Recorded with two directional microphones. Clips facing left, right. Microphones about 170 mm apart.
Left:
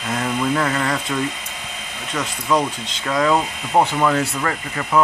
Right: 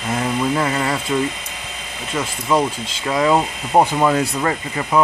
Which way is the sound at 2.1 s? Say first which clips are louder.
Right 1 dB; 10° right (ahead or behind).